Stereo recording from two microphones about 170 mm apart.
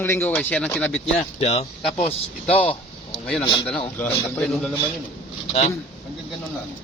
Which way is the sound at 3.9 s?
5° left (ahead or behind).